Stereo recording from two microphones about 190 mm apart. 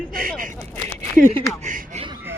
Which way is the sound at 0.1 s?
50° right (ahead or behind).